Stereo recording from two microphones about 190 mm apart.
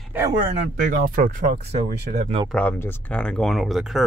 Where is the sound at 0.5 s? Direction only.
50° right (ahead or behind).